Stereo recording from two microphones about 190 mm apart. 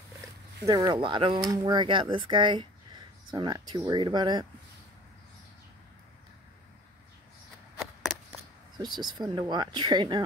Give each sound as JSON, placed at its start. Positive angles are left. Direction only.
{"t": 0.7, "sound": "speech", "side_deg": -20}
{"t": 7.8, "sound": "a sound", "side_deg": 0}
{"t": 8.7, "sound": "speech", "side_deg": -20}